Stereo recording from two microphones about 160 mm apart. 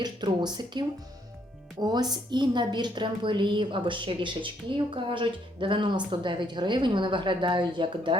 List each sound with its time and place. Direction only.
0.0 s a woman's voice: 25° right (ahead or behind)